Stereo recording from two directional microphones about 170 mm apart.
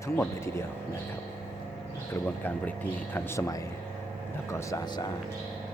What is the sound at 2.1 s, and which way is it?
Speech, 10° left (ahead or behind).